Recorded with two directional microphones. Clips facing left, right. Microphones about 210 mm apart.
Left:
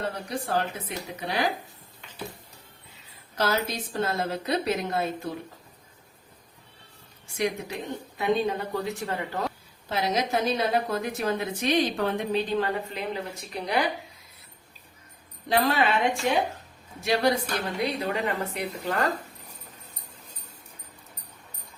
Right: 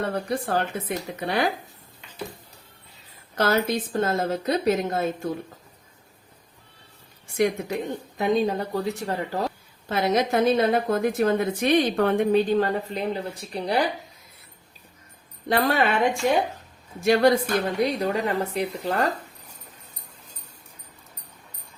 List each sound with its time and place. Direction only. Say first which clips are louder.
0.1 s speech: right 4 dB; 55° right (ahead or behind)
3.3 s a woman's voice: right 5 dB; 55° right (ahead or behind)
7.3 s speech: right 5 dB; 55° right (ahead or behind)
8.2 s a woman's voice: right 3 dB; 40° right (ahead or behind)
9.9 s a woman's voice: right 4 dB; 55° right (ahead or behind); by 13.8 s 35° right (ahead or behind)
15.4 s a woman's voice: right 2 dB; 50° right (ahead or behind)
17.0 s a woman's voice: right 6 dB; 50° right (ahead or behind)